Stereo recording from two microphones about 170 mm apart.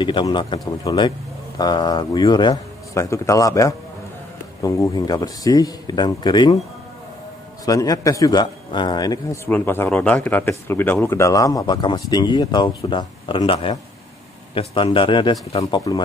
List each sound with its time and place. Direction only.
0.0 s speech: 25° left (ahead or behind)
7.6 s speech: 20° left (ahead or behind)
9.5 s speech: 10° left (ahead or behind)